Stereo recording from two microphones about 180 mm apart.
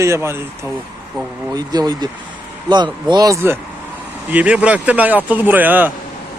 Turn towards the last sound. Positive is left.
turn(degrees=-10)  # may be behind; listen again after turning